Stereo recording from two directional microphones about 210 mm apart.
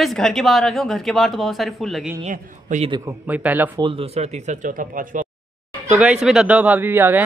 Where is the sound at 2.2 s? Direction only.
35° right (ahead or behind).